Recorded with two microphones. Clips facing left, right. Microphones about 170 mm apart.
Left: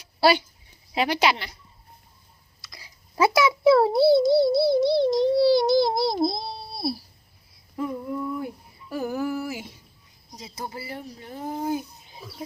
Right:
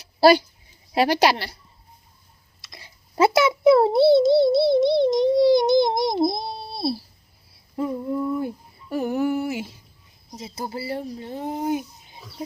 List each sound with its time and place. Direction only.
0.2 s speech: 40° right (ahead or behind)
2.6 s a sound: 25° right (ahead or behind)
10.3 s speech: 25° right (ahead or behind)